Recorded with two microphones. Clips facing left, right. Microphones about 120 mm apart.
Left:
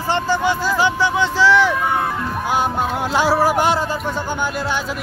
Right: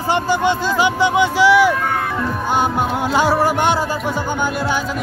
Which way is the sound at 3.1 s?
Centre (ahead or behind).